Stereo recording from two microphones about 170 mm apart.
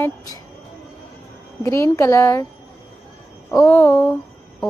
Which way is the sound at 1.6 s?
15° left (ahead or behind).